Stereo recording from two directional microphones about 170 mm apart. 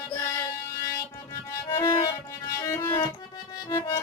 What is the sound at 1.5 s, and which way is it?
Music, 20° left (ahead or behind).